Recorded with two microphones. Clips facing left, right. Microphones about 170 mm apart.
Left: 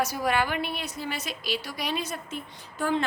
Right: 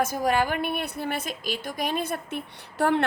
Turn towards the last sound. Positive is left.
turn(degrees=-65)  # may be behind; listen again after turning